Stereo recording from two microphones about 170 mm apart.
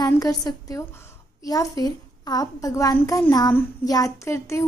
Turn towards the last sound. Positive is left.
turn(degrees=15)  # may be behind; listen again after turning